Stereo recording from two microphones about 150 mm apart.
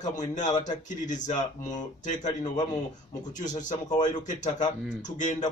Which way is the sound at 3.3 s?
55° left (ahead or behind).